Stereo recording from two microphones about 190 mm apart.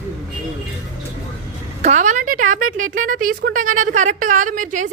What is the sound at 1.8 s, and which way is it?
Speech, 40° right (ahead or behind).